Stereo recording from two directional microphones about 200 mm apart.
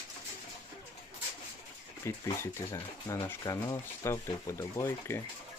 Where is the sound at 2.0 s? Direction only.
15° left (ahead or behind).